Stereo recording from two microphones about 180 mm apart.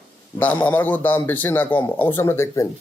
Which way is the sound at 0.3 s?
10° left (ahead or behind).